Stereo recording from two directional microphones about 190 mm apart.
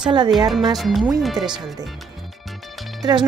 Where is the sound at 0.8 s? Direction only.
Centre (ahead or behind).